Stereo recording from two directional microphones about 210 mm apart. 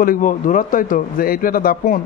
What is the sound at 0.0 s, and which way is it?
A man's voice, 40° left (ahead or behind).